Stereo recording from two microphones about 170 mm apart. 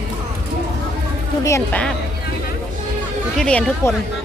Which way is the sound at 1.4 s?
15° left (ahead or behind).